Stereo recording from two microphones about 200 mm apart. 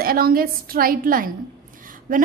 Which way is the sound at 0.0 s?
45° right (ahead or behind).